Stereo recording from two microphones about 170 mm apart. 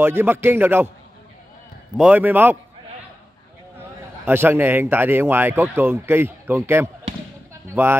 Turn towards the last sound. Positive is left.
turn(degrees=-15)  # may be behind; listen again after turning